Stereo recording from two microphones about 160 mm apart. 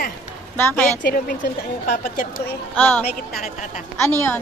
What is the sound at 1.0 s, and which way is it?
Speech, 65° left (ahead or behind).